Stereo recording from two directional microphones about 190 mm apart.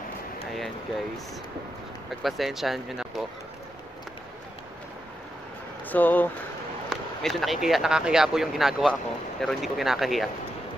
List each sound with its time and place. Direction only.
2.0 s speech: centre (ahead or behind)
5.9 s speech: 10° left (ahead or behind)